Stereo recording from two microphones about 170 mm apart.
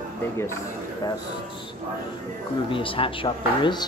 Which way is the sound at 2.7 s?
30° left (ahead or behind).